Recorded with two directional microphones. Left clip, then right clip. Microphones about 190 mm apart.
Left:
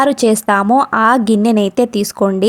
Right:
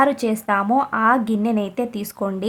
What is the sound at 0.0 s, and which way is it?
A woman's voice, 35° left (ahead or behind).